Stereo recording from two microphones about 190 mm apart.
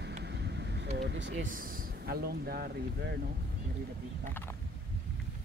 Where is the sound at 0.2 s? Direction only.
65° right (ahead or behind).